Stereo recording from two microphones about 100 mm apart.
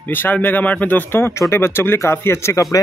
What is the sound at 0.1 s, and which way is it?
Speech, 20° left (ahead or behind).